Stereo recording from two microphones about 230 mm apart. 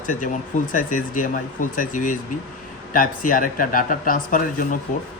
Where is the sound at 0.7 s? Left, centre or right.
Left.